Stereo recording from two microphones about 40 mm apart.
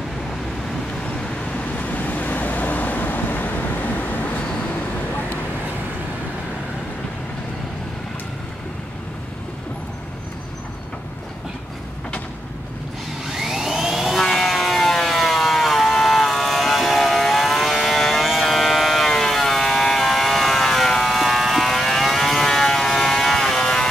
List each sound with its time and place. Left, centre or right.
1.1 s vehicle: left
1.8 s vehicle: left
13.3 s vacuum cleaner: centre
14.1 s siren: centre
18.4 s a sound: centre
19.0 s a sound: centre